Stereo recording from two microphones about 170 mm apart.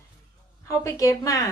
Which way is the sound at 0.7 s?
20° left (ahead or behind).